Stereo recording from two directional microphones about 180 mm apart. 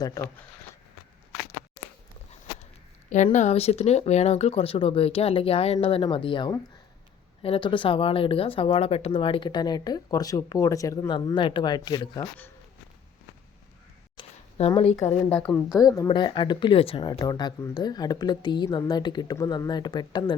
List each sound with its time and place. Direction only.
0.0 s a woman's voice: 15° left (ahead or behind)
3.3 s speech: 40° left (ahead or behind); by 12.3 s 25° left (ahead or behind)
14.2 s a sound: 30° left (ahead or behind)
14.9 s a woman's voice: 10° left (ahead or behind)
15.7 s speech: 20° left (ahead or behind)